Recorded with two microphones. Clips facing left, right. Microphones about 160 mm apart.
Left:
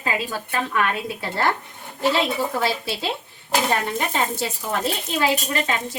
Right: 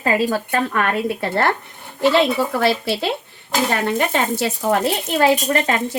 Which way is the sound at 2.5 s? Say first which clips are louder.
Right 6 dB; 70° right (ahead or behind).